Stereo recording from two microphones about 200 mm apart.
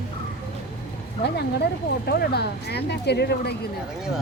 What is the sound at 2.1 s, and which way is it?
Speech, 55° left (ahead or behind).